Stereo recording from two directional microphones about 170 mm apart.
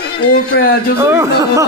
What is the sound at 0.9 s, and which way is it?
Speech, 15° right (ahead or behind).